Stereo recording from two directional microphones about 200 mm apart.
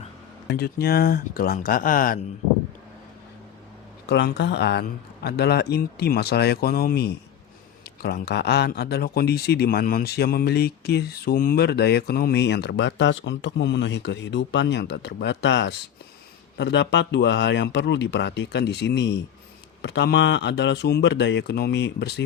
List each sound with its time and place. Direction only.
0.4 s a man's voice: 50° left (ahead or behind)
4.1 s a man's voice: 60° left (ahead or behind)